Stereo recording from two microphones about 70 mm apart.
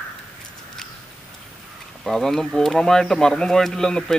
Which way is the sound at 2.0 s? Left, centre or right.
Centre.